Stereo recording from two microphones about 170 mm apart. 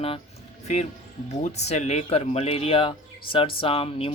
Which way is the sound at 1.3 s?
40° left (ahead or behind).